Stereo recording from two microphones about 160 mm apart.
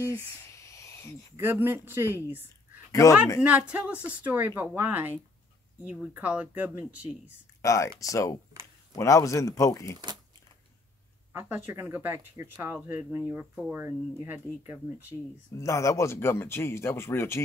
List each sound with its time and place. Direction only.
0.0 s a sound: 20° left (ahead or behind)
1.3 s speech: 15° right (ahead or behind)
2.9 s speech: 20° left (ahead or behind)
3.4 s speech: 5° right (ahead or behind)
7.6 s speech: 20° left (ahead or behind)
11.3 s speech: 15° right (ahead or behind)
15.5 s speech: 20° left (ahead or behind)